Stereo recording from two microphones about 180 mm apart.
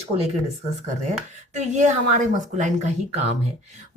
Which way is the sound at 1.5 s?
40° right (ahead or behind).